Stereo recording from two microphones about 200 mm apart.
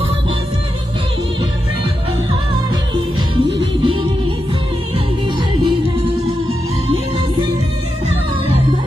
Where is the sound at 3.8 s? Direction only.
25° right (ahead or behind).